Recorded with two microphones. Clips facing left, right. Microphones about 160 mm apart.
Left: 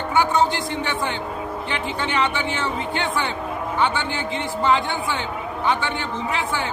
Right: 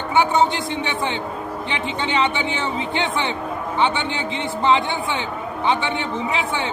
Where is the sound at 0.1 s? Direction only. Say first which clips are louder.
Right 2 dB; 25° right (ahead or behind).